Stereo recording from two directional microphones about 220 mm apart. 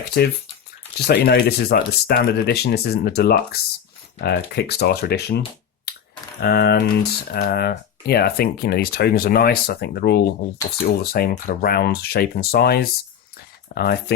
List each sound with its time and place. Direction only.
0.2 s speech: 50° left (ahead or behind)
6.4 s speech: 45° left (ahead or behind)